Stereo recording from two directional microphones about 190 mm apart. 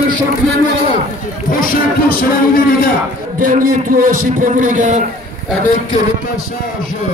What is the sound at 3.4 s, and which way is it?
A man's voice, 45° right (ahead or behind).